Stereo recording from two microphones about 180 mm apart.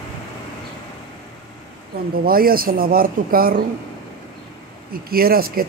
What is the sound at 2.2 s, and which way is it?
Speech, 55° right (ahead or behind).